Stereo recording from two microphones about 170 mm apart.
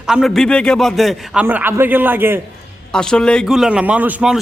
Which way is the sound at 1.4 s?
10° right (ahead or behind).